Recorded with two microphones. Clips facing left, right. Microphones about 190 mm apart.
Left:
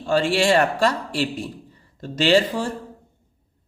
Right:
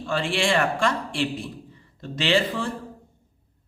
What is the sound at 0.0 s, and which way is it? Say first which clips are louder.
A man's voice: left 5 dB; 40° left (ahead or behind).